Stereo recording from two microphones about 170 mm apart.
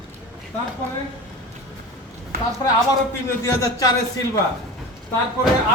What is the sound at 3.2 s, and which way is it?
Speech, 15° left (ahead or behind).